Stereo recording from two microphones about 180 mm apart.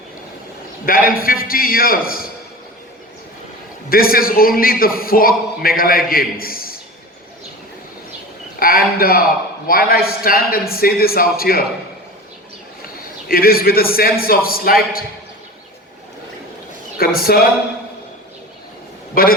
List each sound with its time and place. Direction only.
0.9 s a man's voice: 55° left (ahead or behind)
3.8 s a man's voice: 55° left (ahead or behind)
8.5 s a man's voice: 55° left (ahead or behind)
13.2 s a man's voice: 55° left (ahead or behind)
17.0 s a man's voice: 55° left (ahead or behind)
19.2 s a man's voice: 55° left (ahead or behind)